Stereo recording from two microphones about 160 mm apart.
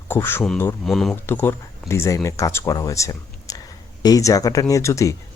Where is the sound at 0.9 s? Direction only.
Centre (ahead or behind).